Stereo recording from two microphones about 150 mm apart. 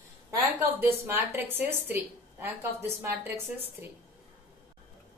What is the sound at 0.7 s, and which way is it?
A woman's voice, 15° right (ahead or behind).